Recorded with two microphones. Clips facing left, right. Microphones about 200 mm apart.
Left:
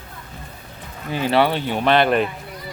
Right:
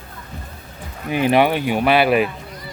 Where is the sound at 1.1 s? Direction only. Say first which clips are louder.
Right 3 dB; 15° right (ahead or behind).